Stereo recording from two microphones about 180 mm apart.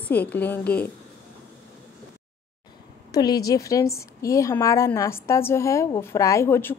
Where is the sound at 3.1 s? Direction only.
20° left (ahead or behind).